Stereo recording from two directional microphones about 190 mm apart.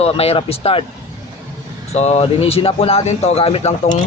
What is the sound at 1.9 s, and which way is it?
Speech, 35° left (ahead or behind).